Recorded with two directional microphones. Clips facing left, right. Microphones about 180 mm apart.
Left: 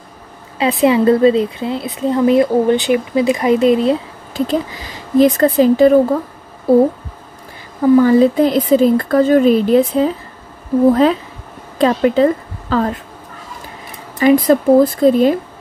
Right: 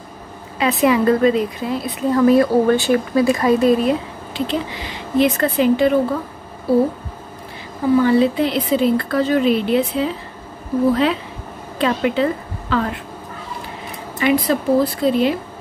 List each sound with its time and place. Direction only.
0.6 s a woman's voice: 25° left (ahead or behind)
4.3 s a woman's voice: 45° left (ahead or behind)
8.0 s a woman's voice: 45° left (ahead or behind)
14.2 s a woman's voice: 45° left (ahead or behind)